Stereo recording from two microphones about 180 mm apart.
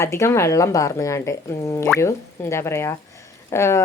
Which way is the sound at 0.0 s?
15° left (ahead or behind).